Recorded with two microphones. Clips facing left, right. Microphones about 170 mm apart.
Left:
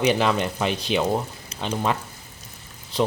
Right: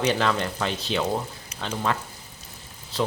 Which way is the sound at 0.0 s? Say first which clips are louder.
Left 3 dB; 15° left (ahead or behind).